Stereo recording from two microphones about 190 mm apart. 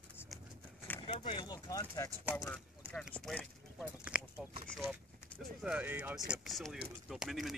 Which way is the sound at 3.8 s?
5° right (ahead or behind).